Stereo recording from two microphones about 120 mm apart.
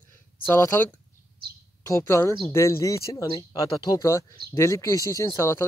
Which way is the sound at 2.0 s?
25° left (ahead or behind).